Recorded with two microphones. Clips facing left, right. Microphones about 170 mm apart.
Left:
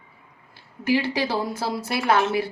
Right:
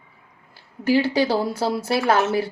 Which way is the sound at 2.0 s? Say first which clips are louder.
Even; 45° right (ahead or behind).